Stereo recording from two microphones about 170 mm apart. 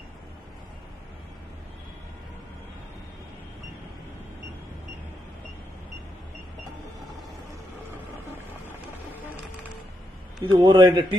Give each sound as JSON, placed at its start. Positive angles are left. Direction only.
{"t": 10.4, "sound": "speech", "side_deg": -25}